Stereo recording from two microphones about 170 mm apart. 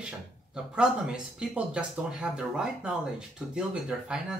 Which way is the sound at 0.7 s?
5° right (ahead or behind).